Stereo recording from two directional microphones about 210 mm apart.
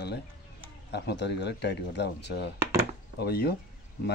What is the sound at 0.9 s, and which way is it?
Speech, 55° left (ahead or behind).